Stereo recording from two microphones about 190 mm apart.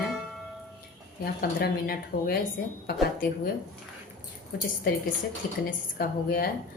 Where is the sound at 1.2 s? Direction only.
55° left (ahead or behind).